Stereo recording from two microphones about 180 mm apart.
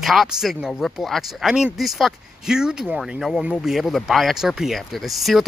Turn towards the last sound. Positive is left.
turn(degrees=0)  # may be behind; listen again after turning